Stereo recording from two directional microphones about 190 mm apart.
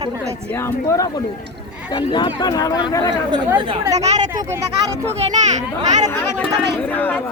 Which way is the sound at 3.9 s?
35° right (ahead or behind).